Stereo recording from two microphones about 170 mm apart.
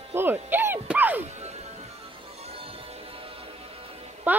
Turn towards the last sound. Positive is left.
turn(degrees=-10)  # may be behind; listen again after turning